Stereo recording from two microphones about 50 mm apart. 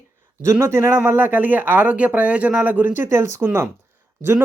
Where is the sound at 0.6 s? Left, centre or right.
Right.